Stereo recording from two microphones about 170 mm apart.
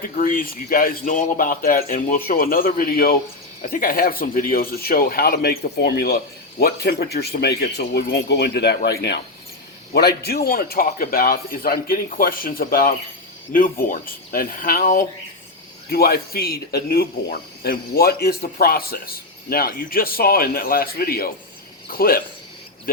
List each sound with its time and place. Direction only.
0.2 s speech: 55° left (ahead or behind)
15.9 s speech: 65° left (ahead or behind)